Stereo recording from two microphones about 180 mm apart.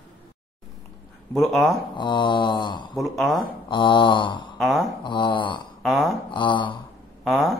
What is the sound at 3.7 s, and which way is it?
Mantra, 25° left (ahead or behind).